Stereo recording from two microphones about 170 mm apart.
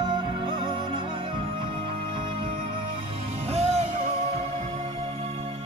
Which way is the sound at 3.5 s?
35° right (ahead or behind).